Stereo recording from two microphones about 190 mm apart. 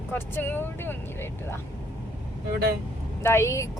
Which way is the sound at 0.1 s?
10° left (ahead or behind).